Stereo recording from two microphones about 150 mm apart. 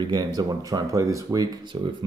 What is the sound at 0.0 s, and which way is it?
Speech, 30° right (ahead or behind).